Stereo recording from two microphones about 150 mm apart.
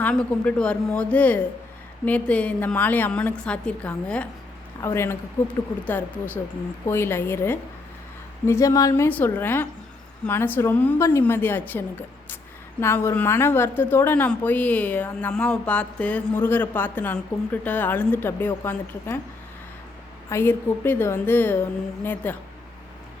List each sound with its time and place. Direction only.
0.0 s a woman's voice: 10° left (ahead or behind)
12.8 s a woman's voice: 15° left (ahead or behind)
20.3 s a woman's voice: 15° left (ahead or behind)